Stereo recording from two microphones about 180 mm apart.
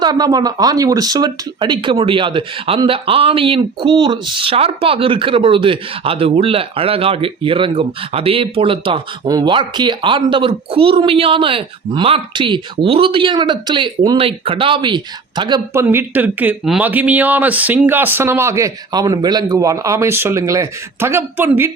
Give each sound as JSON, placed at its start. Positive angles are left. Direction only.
{"t": 0.0, "sound": "speech", "side_deg": -20}